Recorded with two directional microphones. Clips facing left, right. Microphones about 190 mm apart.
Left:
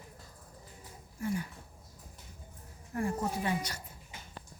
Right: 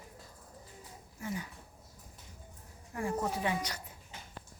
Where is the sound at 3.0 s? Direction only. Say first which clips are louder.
Even; 15° right (ahead or behind).